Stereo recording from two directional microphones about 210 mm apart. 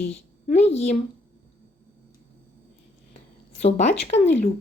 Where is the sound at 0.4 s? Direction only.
30° left (ahead or behind).